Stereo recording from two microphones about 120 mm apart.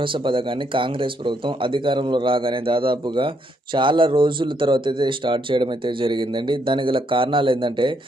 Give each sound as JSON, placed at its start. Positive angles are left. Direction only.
{"t": 0.0, "sound": "speech", "side_deg": -45}